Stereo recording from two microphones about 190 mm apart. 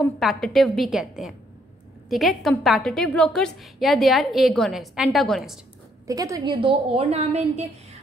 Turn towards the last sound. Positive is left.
turn(degrees=-35)  # may be behind; listen again after turning